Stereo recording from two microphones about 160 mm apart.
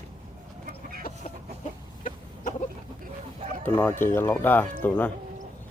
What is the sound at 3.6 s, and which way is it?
Speech, 10° left (ahead or behind).